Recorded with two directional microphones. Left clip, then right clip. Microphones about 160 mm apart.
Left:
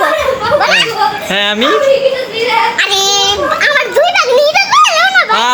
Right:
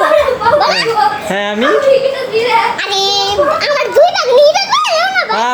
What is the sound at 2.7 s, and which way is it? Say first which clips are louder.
Child singing: left 3 dB; 10° left (ahead or behind).